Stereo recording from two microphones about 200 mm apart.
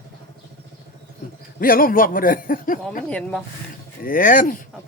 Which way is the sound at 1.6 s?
45° left (ahead or behind).